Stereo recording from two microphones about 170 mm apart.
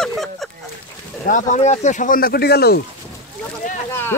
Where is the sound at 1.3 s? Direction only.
45° left (ahead or behind); by 2.8 s 70° left (ahead or behind).